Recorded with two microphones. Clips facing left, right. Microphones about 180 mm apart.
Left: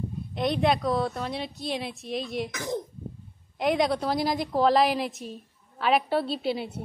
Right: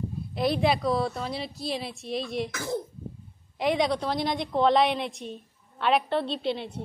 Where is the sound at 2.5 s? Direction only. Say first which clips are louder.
Even; 15° left (ahead or behind).